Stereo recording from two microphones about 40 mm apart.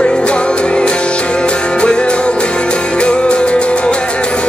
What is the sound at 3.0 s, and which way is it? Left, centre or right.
Music, left.